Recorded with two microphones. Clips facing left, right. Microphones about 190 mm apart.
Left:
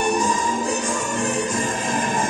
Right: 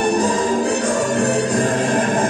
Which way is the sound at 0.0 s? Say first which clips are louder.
Right 4 dB; 60° right (ahead or behind).